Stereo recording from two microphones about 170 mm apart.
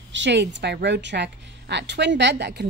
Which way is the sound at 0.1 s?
90° right.